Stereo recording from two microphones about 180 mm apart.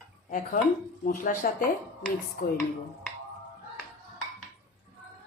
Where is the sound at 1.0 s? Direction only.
50° left (ahead or behind).